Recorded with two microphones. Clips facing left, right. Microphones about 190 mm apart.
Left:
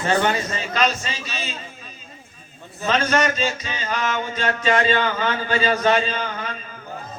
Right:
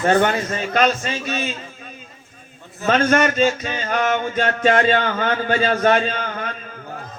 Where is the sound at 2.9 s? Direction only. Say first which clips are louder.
Right 4 dB; 55° right (ahead or behind).